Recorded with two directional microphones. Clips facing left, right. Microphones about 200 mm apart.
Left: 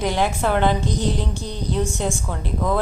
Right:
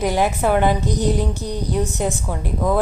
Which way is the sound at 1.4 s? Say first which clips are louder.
Right 4 dB; 40° right (ahead or behind).